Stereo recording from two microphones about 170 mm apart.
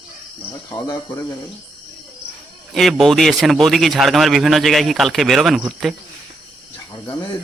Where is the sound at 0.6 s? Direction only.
20° left (ahead or behind).